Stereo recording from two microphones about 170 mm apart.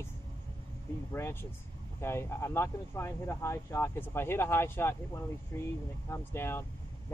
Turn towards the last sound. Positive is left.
turn(degrees=15)  # may be behind; listen again after turning